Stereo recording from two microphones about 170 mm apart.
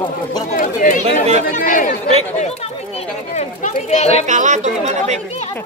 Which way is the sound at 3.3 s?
45° left (ahead or behind).